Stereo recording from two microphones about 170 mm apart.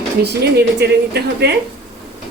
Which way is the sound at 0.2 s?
75° right (ahead or behind).